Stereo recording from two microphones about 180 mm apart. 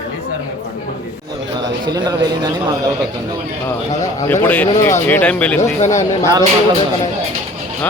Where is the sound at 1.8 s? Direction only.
20° right (ahead or behind).